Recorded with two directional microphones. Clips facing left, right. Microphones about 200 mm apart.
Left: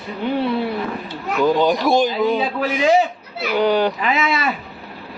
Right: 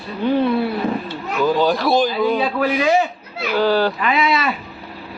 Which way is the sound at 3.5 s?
20° left (ahead or behind).